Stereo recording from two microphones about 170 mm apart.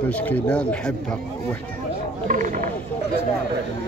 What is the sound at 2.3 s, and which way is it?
Speech, 50° right (ahead or behind).